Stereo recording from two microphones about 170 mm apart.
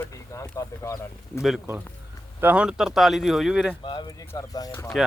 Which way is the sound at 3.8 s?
25° left (ahead or behind).